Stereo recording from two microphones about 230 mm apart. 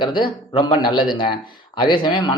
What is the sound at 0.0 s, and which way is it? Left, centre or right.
Speech, left.